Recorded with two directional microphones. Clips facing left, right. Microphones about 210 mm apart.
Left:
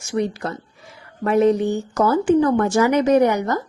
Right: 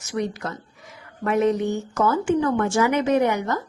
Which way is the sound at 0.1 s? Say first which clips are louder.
Left 4 dB; 30° left (ahead or behind).